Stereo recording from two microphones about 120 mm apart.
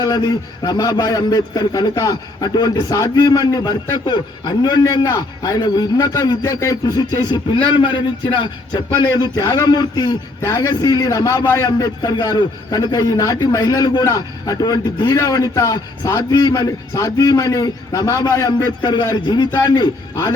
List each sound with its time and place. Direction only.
0.6 s a man's voice: 30° left (ahead or behind)